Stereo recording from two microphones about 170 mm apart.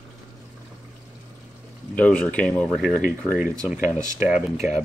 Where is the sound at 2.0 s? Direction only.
10° left (ahead or behind).